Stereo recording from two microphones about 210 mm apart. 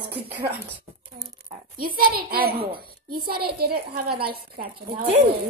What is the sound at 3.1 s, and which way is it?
Speech, 90° right.